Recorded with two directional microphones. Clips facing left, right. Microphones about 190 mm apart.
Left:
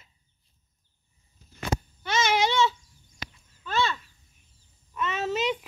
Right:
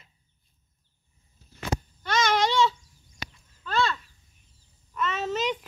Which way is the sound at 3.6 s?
5° left (ahead or behind).